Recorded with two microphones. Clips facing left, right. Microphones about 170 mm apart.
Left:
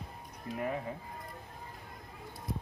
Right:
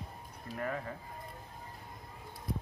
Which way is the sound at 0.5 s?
15° left (ahead or behind).